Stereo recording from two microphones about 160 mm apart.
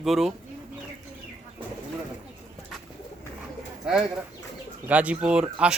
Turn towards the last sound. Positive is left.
turn(degrees=-5)  # may be behind; listen again after turning